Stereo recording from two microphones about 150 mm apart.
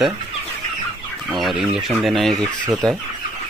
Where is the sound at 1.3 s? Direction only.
Centre (ahead or behind).